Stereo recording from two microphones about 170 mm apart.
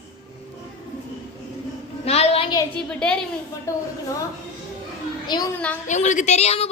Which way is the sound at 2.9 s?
5° left (ahead or behind).